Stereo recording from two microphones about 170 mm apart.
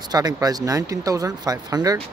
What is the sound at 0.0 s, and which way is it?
Speech, 25° right (ahead or behind).